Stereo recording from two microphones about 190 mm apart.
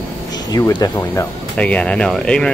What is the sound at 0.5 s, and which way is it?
Speech, 20° left (ahead or behind).